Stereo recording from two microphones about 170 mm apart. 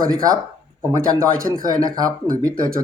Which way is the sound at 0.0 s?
20° right (ahead or behind).